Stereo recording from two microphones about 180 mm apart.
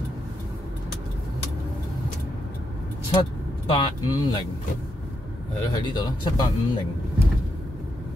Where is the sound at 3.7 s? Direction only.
25° left (ahead or behind).